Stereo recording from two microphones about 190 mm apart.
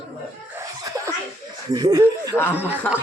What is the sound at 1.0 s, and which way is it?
Speech, 15° right (ahead or behind).